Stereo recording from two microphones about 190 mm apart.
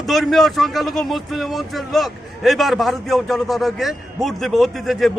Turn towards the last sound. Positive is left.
turn(degrees=0)  # may be behind; listen again after turning